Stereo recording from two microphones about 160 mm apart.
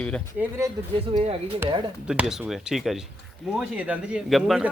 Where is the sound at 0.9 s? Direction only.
35° right (ahead or behind).